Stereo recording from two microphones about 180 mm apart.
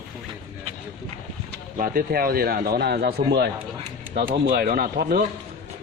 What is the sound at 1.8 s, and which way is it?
Speech, 55° right (ahead or behind).